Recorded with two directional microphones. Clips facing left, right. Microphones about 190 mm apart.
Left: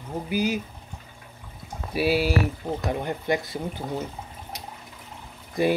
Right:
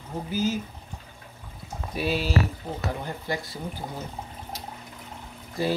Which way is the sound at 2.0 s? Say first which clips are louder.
Left 5 dB; 10° left (ahead or behind).